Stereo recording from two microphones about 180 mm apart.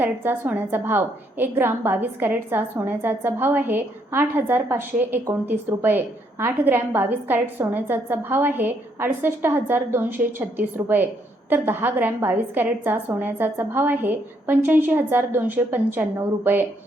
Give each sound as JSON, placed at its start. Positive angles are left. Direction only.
{"t": 0.0, "sound": "a woman's voice", "side_deg": -10}